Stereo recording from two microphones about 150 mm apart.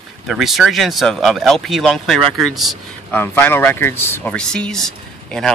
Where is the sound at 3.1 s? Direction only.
15° left (ahead or behind).